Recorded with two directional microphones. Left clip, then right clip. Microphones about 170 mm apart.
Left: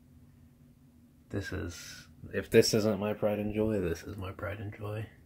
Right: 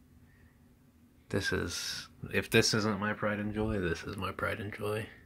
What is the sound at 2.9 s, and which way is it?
Speech, 25° right (ahead or behind).